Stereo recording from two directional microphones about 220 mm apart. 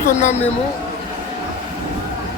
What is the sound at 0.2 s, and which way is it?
Speech, 30° left (ahead or behind).